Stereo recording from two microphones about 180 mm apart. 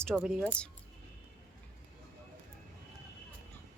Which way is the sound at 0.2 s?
Centre (ahead or behind).